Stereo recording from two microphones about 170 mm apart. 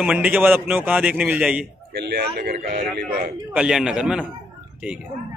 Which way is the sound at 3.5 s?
5° right (ahead or behind).